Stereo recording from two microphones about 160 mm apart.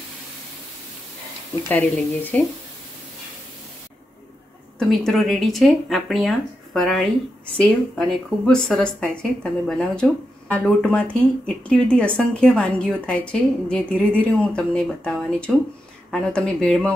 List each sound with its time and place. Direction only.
1.7 s a woman's voice: 10° left (ahead or behind)
4.7 s a woman's voice: centre (ahead or behind)